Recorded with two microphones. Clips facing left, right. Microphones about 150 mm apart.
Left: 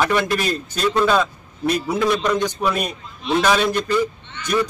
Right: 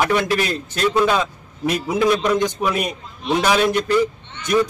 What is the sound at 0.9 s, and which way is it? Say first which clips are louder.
A man's voice: even; 10° right (ahead or behind).